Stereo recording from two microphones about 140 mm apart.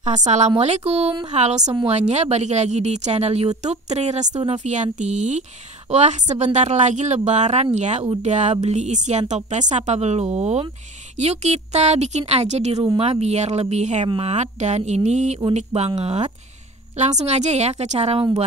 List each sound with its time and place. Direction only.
0.0 s a woman's voice: 60° right (ahead or behind)
14.0 s speech: 40° right (ahead or behind)
14.3 s speech: 55° right (ahead or behind)